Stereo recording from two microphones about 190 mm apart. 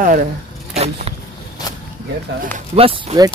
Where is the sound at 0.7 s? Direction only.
35° right (ahead or behind).